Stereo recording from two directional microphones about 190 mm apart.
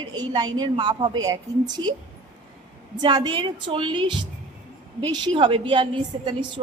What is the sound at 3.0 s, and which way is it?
A woman's voice, 20° right (ahead or behind).